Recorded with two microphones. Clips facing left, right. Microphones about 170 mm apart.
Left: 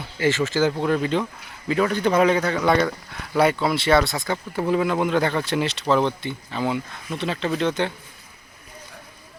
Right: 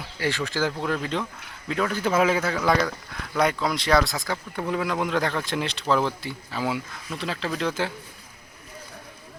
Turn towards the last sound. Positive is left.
turn(degrees=0)  # may be behind; listen again after turning